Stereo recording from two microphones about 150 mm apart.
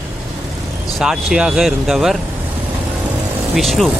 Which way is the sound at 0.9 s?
Centre (ahead or behind).